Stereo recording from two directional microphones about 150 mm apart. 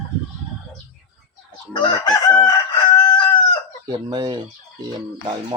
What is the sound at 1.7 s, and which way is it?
Chicken, 30° left (ahead or behind).